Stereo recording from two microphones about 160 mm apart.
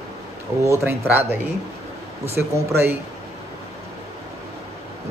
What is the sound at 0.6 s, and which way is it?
Speech, 15° right (ahead or behind).